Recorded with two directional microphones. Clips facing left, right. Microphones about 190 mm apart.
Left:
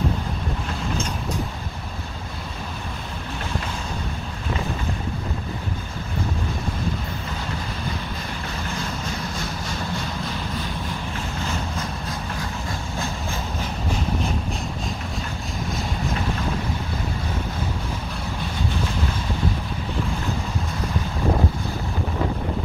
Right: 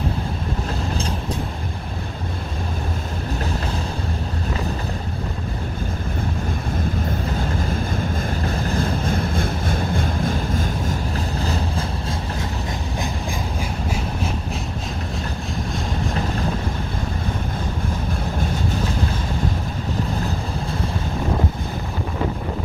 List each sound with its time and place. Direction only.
7.9 s vehicle: 45° right (ahead or behind); by 12.4 s 30° right (ahead or behind)
13.0 s train: 15° right (ahead or behind)